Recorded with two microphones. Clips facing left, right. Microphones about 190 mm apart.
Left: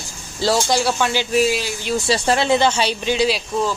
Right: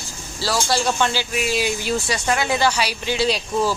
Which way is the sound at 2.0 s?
30° left (ahead or behind).